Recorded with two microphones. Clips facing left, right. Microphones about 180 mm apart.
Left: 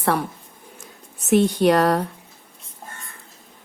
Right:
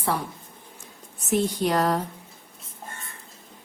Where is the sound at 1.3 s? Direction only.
65° left (ahead or behind).